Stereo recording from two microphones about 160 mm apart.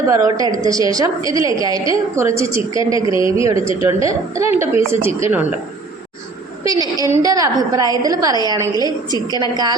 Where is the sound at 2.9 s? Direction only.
30° left (ahead or behind).